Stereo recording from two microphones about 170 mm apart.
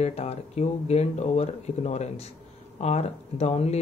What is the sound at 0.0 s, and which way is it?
Speech, 40° left (ahead or behind).